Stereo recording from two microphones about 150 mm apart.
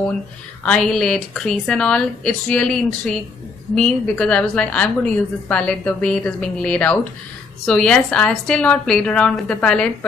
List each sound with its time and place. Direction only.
0.7 s a woman's voice: 5° left (ahead or behind)